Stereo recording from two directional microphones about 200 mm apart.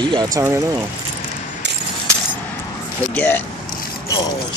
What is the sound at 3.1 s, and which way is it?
Speech, 10° left (ahead or behind).